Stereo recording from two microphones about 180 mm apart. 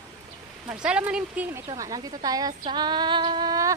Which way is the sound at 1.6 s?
20° right (ahead or behind).